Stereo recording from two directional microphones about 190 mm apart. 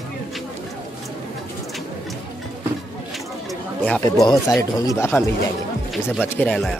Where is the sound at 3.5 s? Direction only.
5° left (ahead or behind).